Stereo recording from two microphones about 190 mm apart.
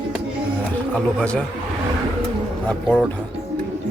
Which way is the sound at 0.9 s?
5° left (ahead or behind).